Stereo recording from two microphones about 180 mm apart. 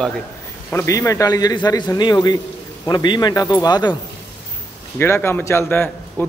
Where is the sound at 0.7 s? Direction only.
15° left (ahead or behind).